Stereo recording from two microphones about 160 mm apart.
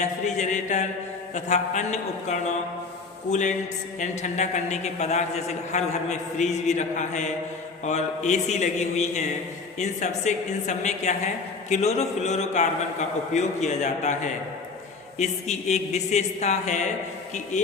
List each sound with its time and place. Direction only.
0.0 s a man's voice: 50° left (ahead or behind)
15.2 s a man's voice: 45° left (ahead or behind)